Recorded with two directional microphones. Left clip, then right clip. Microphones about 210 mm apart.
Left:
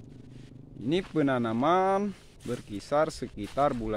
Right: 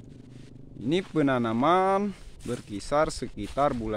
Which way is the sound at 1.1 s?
10° right (ahead or behind).